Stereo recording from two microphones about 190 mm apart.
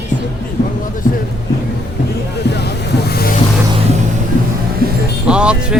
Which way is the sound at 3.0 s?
55° left (ahead or behind).